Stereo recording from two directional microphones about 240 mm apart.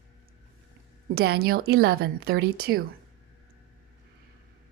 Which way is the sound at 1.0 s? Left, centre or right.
Right.